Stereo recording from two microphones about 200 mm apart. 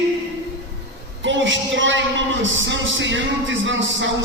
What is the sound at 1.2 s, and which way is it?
A man's voice, 70° right (ahead or behind).